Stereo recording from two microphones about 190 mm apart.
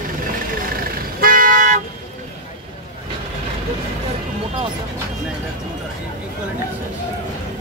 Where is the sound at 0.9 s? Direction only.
50° right (ahead or behind).